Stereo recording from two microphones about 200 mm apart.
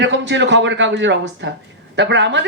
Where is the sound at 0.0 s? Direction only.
65° right (ahead or behind).